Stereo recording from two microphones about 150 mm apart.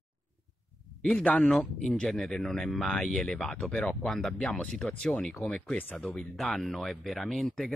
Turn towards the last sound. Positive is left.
turn(degrees=0)  # may be behind; listen again after turning